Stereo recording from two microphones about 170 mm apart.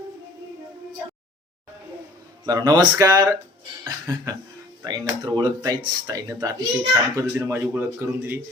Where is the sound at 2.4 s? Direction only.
20° right (ahead or behind).